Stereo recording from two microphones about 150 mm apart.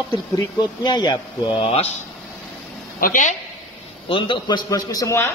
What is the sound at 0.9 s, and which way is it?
Speech, 30° left (ahead or behind).